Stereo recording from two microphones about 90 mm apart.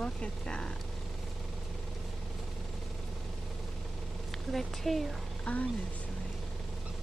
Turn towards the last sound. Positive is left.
turn(degrees=15)  # may be behind; listen again after turning